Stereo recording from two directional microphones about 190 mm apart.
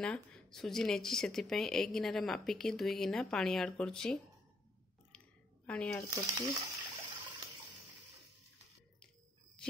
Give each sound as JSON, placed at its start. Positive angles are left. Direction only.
{"t": 0.0, "sound": "speech", "side_deg": 5}
{"t": 5.7, "sound": "speech", "side_deg": 5}
{"t": 6.1, "sound": "speech", "side_deg": -25}